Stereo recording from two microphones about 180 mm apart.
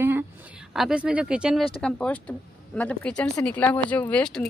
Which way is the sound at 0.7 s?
5° right (ahead or behind).